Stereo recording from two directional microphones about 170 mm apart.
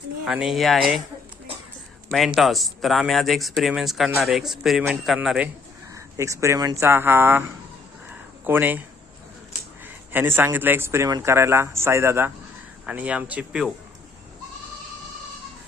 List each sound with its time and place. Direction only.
0.3 s speech: 5° right (ahead or behind)
2.0 s speech: centre (ahead or behind)
5.9 s speech: 20° right (ahead or behind)
10.1 s speech: 10° right (ahead or behind)